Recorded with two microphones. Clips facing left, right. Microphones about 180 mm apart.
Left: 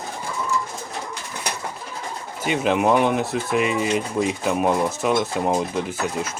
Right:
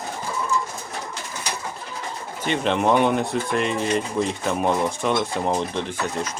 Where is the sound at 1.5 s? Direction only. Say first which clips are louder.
Left 2 dB; 60° left (ahead or behind).